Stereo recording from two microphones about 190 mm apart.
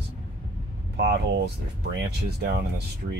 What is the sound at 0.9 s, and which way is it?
Speech, 60° right (ahead or behind).